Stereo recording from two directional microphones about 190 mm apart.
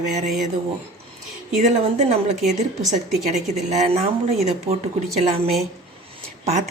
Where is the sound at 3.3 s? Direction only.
35° right (ahead or behind).